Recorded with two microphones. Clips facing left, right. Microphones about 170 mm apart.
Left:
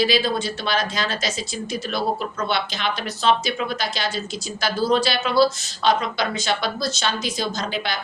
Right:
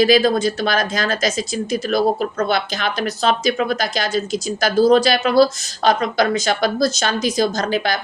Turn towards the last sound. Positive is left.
turn(degrees=-45)  # may be behind; listen again after turning